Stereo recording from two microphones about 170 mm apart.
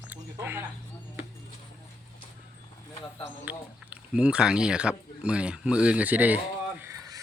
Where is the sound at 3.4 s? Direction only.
10° right (ahead or behind).